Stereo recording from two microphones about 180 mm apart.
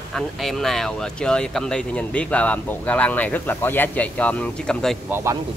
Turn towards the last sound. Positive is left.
turn(degrees=-15)  # may be behind; listen again after turning